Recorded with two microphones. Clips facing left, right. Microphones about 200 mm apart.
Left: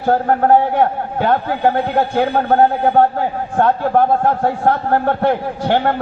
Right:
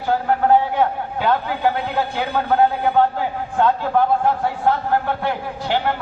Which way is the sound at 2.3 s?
45° left (ahead or behind).